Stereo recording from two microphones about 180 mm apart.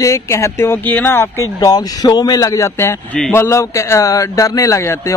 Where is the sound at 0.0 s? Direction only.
15° left (ahead or behind).